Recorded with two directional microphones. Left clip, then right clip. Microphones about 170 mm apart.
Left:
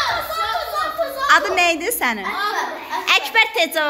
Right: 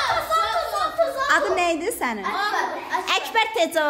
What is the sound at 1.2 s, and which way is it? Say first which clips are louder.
A child's voice: left 8 dB; 15° right (ahead or behind).